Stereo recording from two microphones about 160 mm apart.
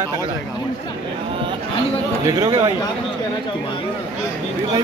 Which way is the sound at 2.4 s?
35° right (ahead or behind).